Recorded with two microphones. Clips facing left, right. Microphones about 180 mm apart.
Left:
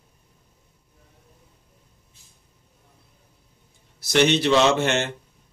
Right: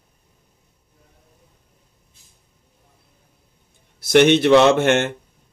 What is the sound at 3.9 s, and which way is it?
A man's voice, 55° right (ahead or behind).